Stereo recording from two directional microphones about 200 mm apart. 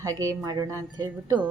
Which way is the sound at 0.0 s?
15° right (ahead or behind).